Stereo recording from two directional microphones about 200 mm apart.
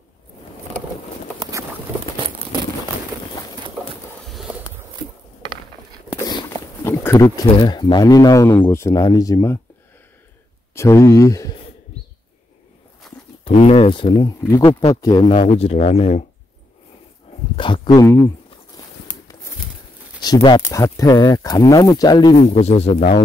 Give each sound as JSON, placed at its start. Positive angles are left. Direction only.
{"t": 4.3, "sound": "a sound", "side_deg": -5}
{"t": 6.2, "sound": "a sound", "side_deg": 15}
{"t": 7.2, "sound": "speech", "side_deg": 20}
{"t": 10.7, "sound": "speech", "side_deg": 15}
{"t": 13.4, "sound": "speech", "side_deg": 30}
{"t": 15.0, "sound": "speech", "side_deg": 20}
{"t": 15.3, "sound": "speech", "side_deg": 30}
{"t": 17.9, "sound": "speech", "side_deg": 10}
{"t": 20.6, "sound": "speech", "side_deg": 15}
{"t": 22.4, "sound": "speech", "side_deg": 35}